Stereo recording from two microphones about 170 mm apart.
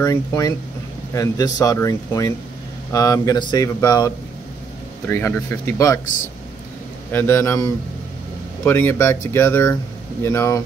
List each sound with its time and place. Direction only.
0.0 s speech: 20° left (ahead or behind)
7.1 s speech: 15° left (ahead or behind)